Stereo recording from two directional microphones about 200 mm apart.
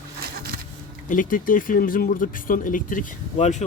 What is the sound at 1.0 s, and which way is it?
Speech, 40° left (ahead or behind).